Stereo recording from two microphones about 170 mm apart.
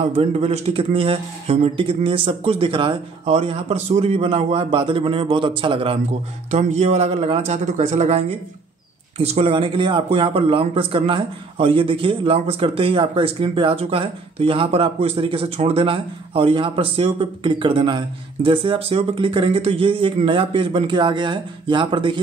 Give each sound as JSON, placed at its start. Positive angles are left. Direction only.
{"t": 0.0, "sound": "speech", "side_deg": -35}
{"t": 6.5, "sound": "speech", "side_deg": -40}